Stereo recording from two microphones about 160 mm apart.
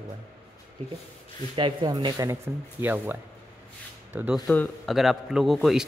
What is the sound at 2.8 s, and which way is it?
Speech, 10° right (ahead or behind).